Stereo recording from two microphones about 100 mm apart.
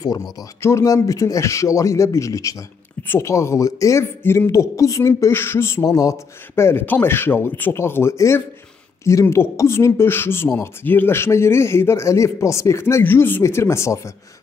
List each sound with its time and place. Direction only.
0.6 s speech: 30° left (ahead or behind)